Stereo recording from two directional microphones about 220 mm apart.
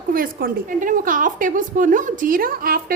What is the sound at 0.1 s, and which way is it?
A woman's voice, 40° right (ahead or behind).